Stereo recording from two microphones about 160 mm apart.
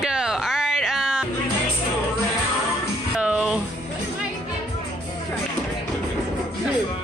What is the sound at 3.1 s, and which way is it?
Music, 5° right (ahead or behind).